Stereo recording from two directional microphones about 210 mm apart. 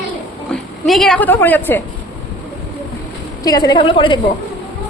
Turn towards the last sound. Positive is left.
turn(degrees=25)  # may be behind; listen again after turning